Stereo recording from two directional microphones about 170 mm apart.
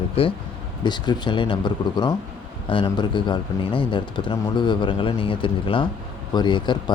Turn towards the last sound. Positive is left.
turn(degrees=25)  # may be behind; listen again after turning